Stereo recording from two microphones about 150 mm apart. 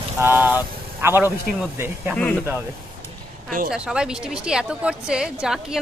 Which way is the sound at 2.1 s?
5° left (ahead or behind).